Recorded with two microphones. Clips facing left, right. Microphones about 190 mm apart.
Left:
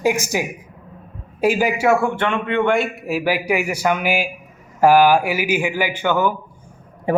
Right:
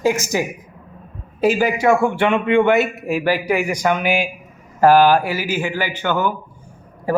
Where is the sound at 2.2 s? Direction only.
15° right (ahead or behind); by 6.3 s 10° left (ahead or behind).